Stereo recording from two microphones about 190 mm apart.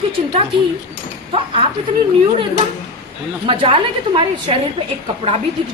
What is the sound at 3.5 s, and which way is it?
A woman's voice, 25° right (ahead or behind).